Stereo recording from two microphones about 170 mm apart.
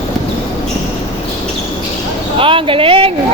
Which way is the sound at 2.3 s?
30° right (ahead or behind).